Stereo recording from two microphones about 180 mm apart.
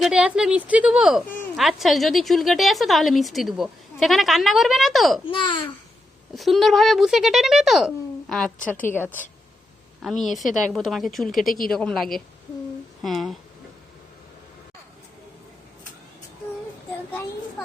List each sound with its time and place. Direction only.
0.0 s speech: 5° right (ahead or behind)
5.3 s a child's voice: 25° left (ahead or behind)
6.3 s a woman's voice: centre (ahead or behind)
10.0 s speech: centre (ahead or behind)